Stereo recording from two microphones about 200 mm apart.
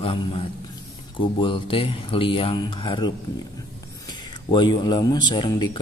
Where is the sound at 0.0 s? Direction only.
25° left (ahead or behind).